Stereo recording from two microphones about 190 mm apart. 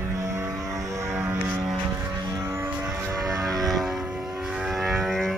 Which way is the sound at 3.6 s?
Centre (ahead or behind).